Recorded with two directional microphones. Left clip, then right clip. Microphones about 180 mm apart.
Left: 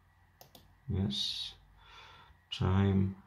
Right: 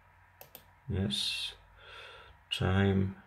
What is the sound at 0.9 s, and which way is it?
Speech, 5° right (ahead or behind).